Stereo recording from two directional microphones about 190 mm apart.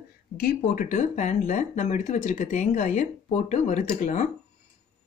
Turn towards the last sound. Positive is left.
turn(degrees=40)  # may be behind; listen again after turning